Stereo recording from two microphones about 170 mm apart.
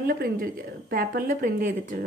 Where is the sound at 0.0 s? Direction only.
60° right (ahead or behind).